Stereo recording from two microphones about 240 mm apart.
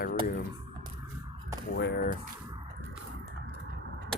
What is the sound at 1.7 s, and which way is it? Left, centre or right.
Speech, left.